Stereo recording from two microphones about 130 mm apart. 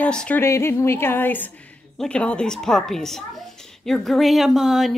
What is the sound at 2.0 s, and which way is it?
Speech, 10° left (ahead or behind).